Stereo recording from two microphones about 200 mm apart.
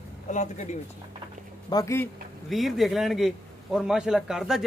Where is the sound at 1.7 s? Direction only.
15° left (ahead or behind).